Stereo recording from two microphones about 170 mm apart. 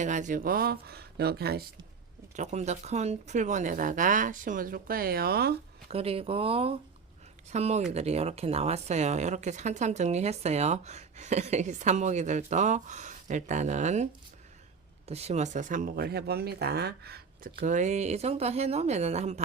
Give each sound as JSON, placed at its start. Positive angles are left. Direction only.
{"t": 0.0, "sound": "speech", "side_deg": -45}
{"t": 2.3, "sound": "speech", "side_deg": -40}
{"t": 5.9, "sound": "speech", "side_deg": -35}